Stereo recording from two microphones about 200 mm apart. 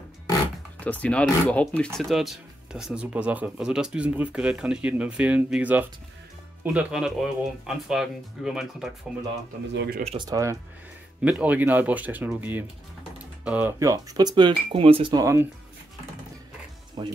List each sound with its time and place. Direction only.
0.7 s speech: 10° left (ahead or behind)
9.8 s speech: 50° right (ahead or behind)
10.0 s speech: 20° right (ahead or behind)
17.0 s speech: 25° right (ahead or behind)